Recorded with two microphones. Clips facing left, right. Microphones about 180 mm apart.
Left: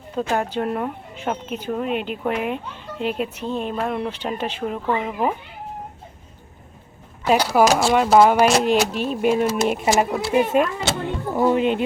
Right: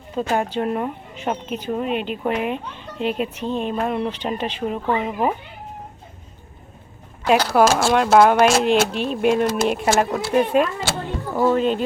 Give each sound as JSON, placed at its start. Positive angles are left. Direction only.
{"t": 0.2, "sound": "speech", "side_deg": -5}
{"t": 1.9, "sound": "speech", "side_deg": 5}
{"t": 3.8, "sound": "speech", "side_deg": -5}
{"t": 4.3, "sound": "speech", "side_deg": 5}
{"t": 4.6, "sound": "speech", "side_deg": -5}
{"t": 7.3, "sound": "speech", "side_deg": 10}
{"t": 8.6, "sound": "speech", "side_deg": 45}
{"t": 9.0, "sound": "speech", "side_deg": 5}
{"t": 10.8, "sound": "speech", "side_deg": 20}